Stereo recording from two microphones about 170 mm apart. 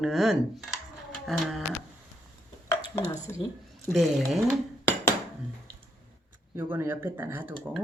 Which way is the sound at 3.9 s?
Centre (ahead or behind).